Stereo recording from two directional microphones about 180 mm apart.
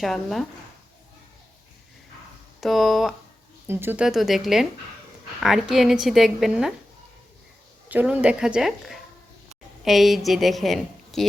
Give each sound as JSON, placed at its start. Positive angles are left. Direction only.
{"t": 0.0, "sound": "a woman's voice", "side_deg": 0}
{"t": 2.6, "sound": "a woman's voice", "side_deg": 0}
{"t": 3.7, "sound": "a woman's voice", "side_deg": -10}
{"t": 7.9, "sound": "a woman's voice", "side_deg": -10}